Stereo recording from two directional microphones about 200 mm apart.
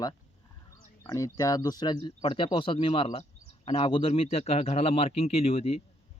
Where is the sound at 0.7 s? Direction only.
15° left (ahead or behind).